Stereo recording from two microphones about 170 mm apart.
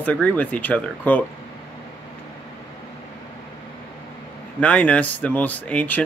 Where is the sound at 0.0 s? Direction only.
10° left (ahead or behind).